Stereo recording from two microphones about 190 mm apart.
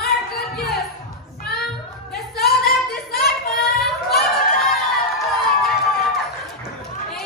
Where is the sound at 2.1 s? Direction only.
Centre (ahead or behind).